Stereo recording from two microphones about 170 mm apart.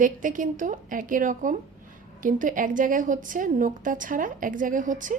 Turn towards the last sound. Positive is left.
turn(degrees=-50)  # may be behind; listen again after turning